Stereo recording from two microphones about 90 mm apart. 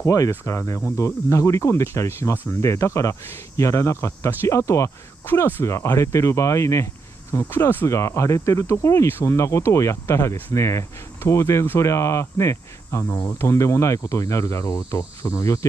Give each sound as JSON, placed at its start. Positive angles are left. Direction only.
{"t": 0.0, "sound": "speech", "side_deg": 40}